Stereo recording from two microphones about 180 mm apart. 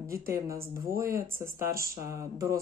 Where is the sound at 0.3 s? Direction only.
15° right (ahead or behind).